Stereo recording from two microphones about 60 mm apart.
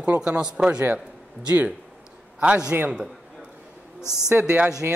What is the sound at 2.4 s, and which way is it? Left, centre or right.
Speech, centre.